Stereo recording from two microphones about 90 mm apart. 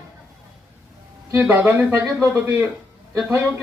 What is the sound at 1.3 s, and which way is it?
Speech, 20° right (ahead or behind).